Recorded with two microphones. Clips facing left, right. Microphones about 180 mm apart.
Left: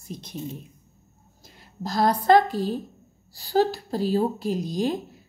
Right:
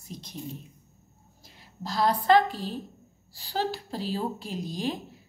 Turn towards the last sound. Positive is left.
turn(degrees=40)  # may be behind; listen again after turning